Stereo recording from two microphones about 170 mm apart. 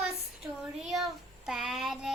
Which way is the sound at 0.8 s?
Centre (ahead or behind).